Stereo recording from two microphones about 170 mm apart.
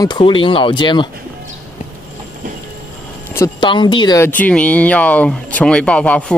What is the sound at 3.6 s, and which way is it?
Speech, 30° left (ahead or behind).